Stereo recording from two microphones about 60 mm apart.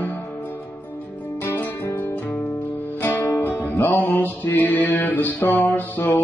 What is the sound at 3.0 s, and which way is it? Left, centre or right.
Music, left.